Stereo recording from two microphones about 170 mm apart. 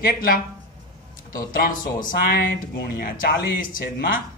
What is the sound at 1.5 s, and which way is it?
Speech, 55° left (ahead or behind).